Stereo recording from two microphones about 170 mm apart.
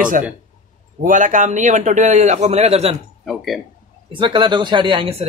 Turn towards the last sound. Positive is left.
turn(degrees=-30)  # may be behind; listen again after turning